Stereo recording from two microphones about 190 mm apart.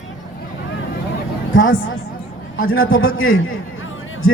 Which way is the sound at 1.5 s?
90° left.